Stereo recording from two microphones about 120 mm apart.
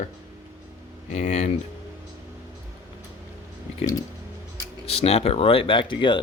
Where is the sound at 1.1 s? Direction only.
90° left.